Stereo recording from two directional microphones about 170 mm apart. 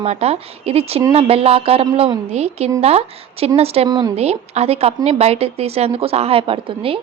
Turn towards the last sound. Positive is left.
turn(degrees=-30)  # may be behind; listen again after turning